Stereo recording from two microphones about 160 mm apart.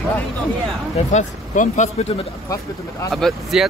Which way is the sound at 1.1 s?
50° left (ahead or behind).